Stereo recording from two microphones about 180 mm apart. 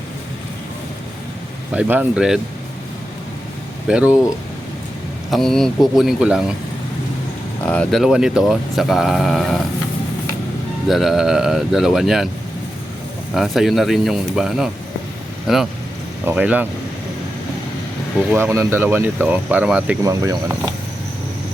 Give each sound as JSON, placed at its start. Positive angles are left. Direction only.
{"t": 1.7, "sound": "speech", "side_deg": -5}
{"t": 3.8, "sound": "speech", "side_deg": -5}
{"t": 5.3, "sound": "speech", "side_deg": 0}
{"t": 7.6, "sound": "speech", "side_deg": 5}
{"t": 10.8, "sound": "speech", "side_deg": 0}
{"t": 13.3, "sound": "speech", "side_deg": 0}
{"t": 18.3, "sound": "speech", "side_deg": -15}
{"t": 20.1, "sound": "speech", "side_deg": -15}